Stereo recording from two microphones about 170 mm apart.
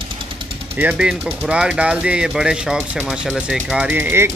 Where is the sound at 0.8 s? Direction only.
5° right (ahead or behind).